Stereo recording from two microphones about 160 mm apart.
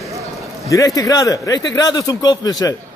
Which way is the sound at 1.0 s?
20° left (ahead or behind).